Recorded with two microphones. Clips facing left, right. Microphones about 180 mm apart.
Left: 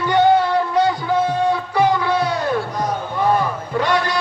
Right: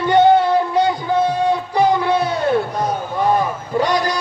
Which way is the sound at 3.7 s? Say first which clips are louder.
Right 2 dB; 35° right (ahead or behind).